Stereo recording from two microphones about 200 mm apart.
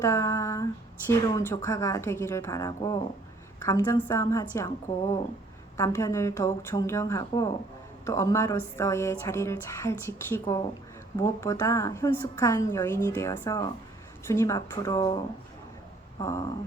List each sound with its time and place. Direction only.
0.0 s speech: 15° left (ahead or behind)